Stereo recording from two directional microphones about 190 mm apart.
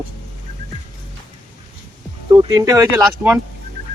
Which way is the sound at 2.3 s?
20° right (ahead or behind).